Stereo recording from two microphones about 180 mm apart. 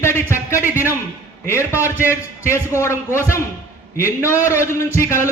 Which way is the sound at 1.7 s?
10° right (ahead or behind).